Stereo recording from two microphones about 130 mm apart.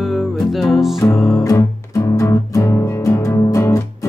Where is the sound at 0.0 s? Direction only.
Centre (ahead or behind).